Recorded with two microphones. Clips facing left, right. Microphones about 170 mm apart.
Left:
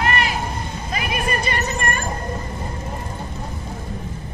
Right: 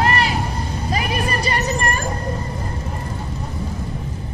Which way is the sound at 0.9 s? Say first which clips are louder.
Right 1 dB; 35° right (ahead or behind).